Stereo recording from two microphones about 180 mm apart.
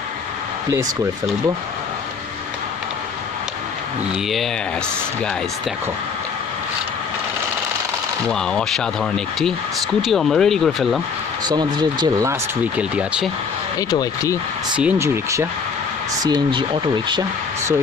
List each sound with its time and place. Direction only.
8.3 s speech: 5° left (ahead or behind)
11.4 s speech: 25° right (ahead or behind)
12.7 s speech: 5° right (ahead or behind)
13.7 s speech: 20° left (ahead or behind)
14.8 s speech: 10° right (ahead or behind); by 17.2 s 25° right (ahead or behind)